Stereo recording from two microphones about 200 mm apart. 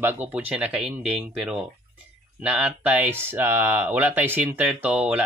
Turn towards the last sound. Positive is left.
turn(degrees=-5)  # may be behind; listen again after turning